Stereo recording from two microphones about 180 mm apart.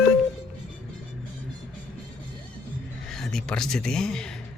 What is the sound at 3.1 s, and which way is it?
Speech, centre (ahead or behind).